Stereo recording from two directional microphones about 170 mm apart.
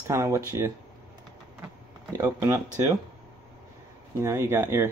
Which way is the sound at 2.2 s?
15° right (ahead or behind).